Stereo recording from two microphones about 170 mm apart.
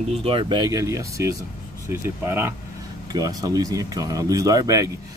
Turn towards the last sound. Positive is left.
turn(degrees=-20)  # may be behind; listen again after turning